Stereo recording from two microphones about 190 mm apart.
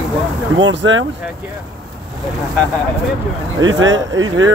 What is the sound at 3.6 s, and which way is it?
Speech, 90° right.